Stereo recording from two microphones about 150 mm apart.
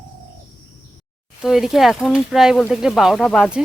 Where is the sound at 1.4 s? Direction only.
Centre (ahead or behind).